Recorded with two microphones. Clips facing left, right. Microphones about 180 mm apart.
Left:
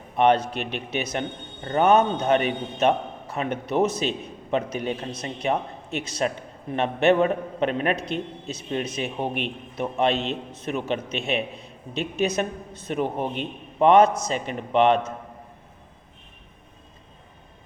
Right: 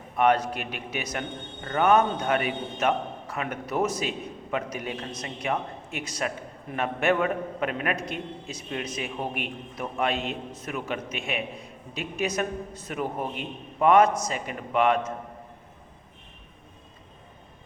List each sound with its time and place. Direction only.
0.2 s a man's voice: 25° left (ahead or behind)